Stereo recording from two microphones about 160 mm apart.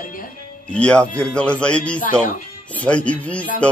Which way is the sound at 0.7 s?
5° left (ahead or behind).